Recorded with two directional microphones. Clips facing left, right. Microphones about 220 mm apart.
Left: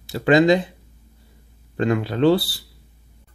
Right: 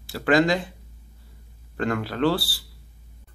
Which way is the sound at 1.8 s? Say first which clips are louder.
Left 5 dB; 20° left (ahead or behind).